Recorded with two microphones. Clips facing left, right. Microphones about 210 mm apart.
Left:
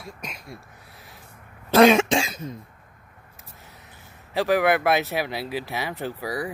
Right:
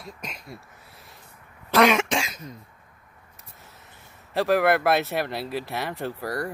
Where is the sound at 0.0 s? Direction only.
Centre (ahead or behind).